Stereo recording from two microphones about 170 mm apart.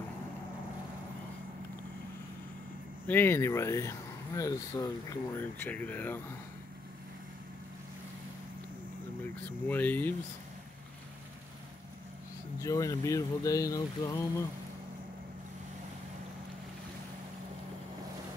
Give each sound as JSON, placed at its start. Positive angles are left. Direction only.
{"t": 3.1, "sound": "speech", "side_deg": 15}
{"t": 5.4, "sound": "speech", "side_deg": 10}
{"t": 9.4, "sound": "speech", "side_deg": 10}
{"t": 12.6, "sound": "speech", "side_deg": 20}